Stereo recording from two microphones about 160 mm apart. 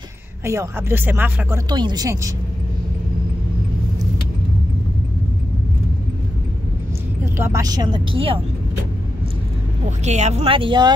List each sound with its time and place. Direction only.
0.5 s speech: 15° right (ahead or behind)
1.7 s speech: 25° right (ahead or behind)
7.3 s speech: 15° right (ahead or behind); by 8.4 s 35° right (ahead or behind)
9.8 s speech: 45° right (ahead or behind); by 10.9 s 30° right (ahead or behind)